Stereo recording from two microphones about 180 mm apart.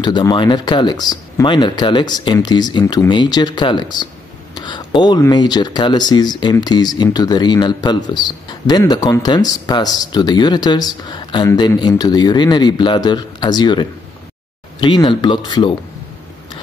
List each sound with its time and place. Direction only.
0.0 s speech: 25° left (ahead or behind)